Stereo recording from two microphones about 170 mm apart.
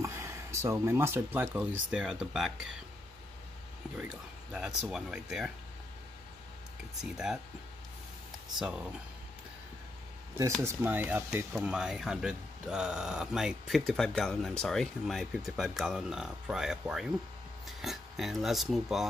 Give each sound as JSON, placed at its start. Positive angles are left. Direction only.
{"t": 0.0, "sound": "speech", "side_deg": -15}
{"t": 4.0, "sound": "speech", "side_deg": -5}
{"t": 7.0, "sound": "speech", "side_deg": -5}
{"t": 10.6, "sound": "speech", "side_deg": -10}